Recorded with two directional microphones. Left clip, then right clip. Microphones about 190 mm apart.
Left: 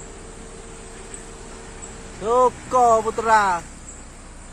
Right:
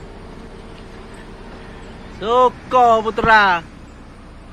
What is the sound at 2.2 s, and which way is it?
Speech, 25° left (ahead or behind).